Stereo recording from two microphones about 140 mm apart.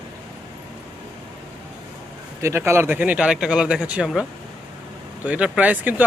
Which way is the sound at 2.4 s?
20° right (ahead or behind).